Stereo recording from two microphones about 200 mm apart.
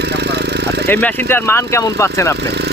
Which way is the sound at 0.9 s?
10° left (ahead or behind).